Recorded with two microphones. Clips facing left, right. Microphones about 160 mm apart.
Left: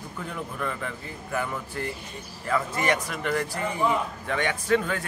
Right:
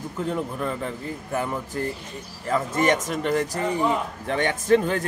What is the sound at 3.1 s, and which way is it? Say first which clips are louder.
Speech: right 4 dB; 25° right (ahead or behind).